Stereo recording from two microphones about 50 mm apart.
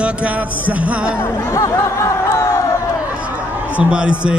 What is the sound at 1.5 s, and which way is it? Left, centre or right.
Music, left.